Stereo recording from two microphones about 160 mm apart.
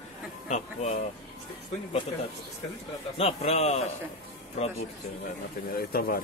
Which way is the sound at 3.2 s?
40° left (ahead or behind).